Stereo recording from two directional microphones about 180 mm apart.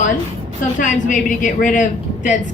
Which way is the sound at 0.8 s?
45° left (ahead or behind).